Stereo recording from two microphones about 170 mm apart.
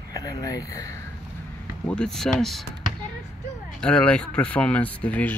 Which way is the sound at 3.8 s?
5° left (ahead or behind).